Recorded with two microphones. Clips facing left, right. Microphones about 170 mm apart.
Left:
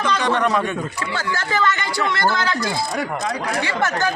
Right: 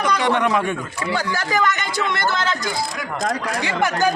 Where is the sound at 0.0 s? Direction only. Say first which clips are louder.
Right 1 dB; 15° right (ahead or behind).